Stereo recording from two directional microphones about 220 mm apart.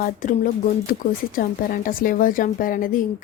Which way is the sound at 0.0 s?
40° left (ahead or behind).